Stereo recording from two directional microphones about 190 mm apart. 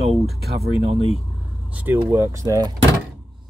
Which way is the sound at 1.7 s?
10° right (ahead or behind).